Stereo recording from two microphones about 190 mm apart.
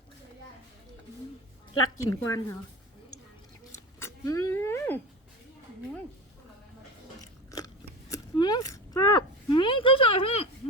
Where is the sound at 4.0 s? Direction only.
15° left (ahead or behind).